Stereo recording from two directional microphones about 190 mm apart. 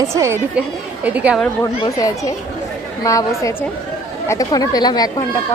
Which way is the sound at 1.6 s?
20° left (ahead or behind).